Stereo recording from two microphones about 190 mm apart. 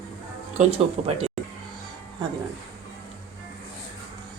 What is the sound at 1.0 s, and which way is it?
Speech, 35° right (ahead or behind).